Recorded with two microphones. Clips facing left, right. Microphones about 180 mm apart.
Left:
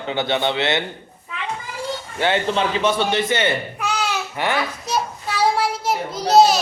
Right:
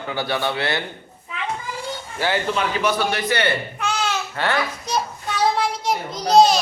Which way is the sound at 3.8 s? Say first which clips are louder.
Even; 10° left (ahead or behind).